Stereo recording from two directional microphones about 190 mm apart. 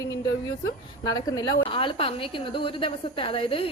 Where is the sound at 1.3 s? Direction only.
25° left (ahead or behind).